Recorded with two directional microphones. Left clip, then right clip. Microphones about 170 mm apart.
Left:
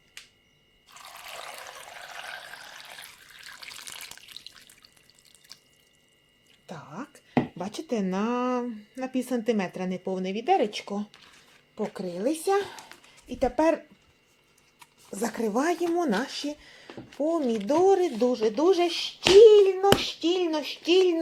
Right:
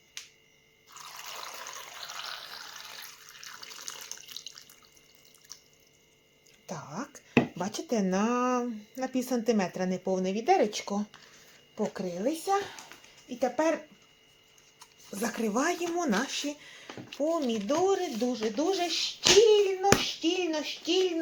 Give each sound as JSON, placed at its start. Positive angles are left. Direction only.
{"t": 3.4, "sound": "water", "side_deg": 20}
{"t": 6.7, "sound": "speech", "side_deg": 0}
{"t": 12.2, "sound": "speech", "side_deg": 45}
{"t": 12.7, "sound": "a sound", "side_deg": 40}
{"t": 15.1, "sound": "speech", "side_deg": 25}
{"t": 17.3, "sound": "speech", "side_deg": 30}
{"t": 17.8, "sound": "speech", "side_deg": 45}
{"t": 19.5, "sound": "hands", "side_deg": 65}
{"t": 20.2, "sound": "a sound", "side_deg": 60}